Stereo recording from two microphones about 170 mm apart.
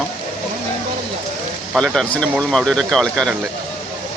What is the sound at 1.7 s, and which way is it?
Speech, centre (ahead or behind).